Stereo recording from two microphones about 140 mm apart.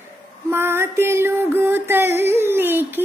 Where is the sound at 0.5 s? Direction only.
15° right (ahead or behind).